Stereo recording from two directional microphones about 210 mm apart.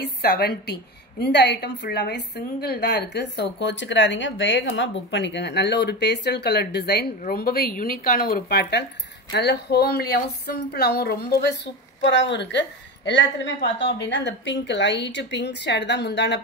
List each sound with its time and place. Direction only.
0.0 s a woman's voice: 50° left (ahead or behind)